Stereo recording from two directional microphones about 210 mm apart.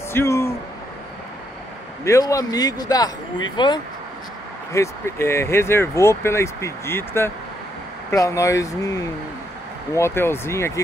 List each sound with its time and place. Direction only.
0.1 s speech: 10° left (ahead or behind)
2.0 s speech: 15° left (ahead or behind)